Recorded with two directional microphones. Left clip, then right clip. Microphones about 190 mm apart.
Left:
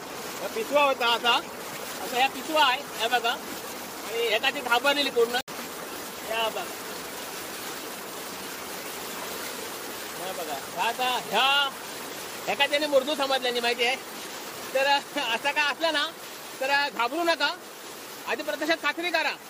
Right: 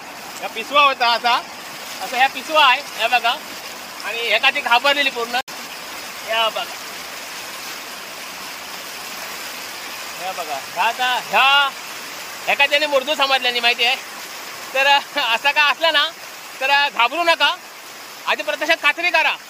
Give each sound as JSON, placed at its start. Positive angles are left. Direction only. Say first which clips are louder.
{"t": 0.7, "sound": "speech", "louder": "right 8 dB", "side_deg": -10}
{"t": 10.8, "sound": "speech", "louder": "right 8 dB", "side_deg": -20}